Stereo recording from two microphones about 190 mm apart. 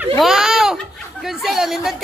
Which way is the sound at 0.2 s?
5° right (ahead or behind).